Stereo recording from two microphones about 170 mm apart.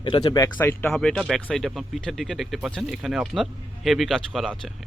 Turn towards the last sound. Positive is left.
turn(degrees=0)  # may be behind; listen again after turning